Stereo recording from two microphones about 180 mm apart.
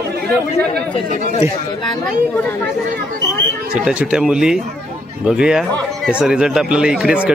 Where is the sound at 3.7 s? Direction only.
5° right (ahead or behind).